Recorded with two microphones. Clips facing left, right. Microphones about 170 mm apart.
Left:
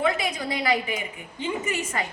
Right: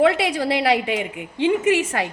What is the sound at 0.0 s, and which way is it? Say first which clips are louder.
A woman's voice: right 8 dB; 75° right (ahead or behind).